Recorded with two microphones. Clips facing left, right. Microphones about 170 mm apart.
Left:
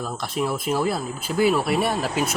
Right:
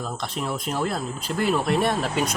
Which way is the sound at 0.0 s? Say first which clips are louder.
Left 3 dB; 5° left (ahead or behind).